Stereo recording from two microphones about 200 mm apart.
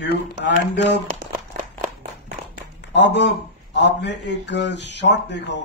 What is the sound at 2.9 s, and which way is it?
Speech, 60° left (ahead or behind).